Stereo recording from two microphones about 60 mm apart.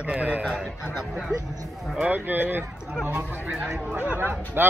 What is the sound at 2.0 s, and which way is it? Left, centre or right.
Speech, right.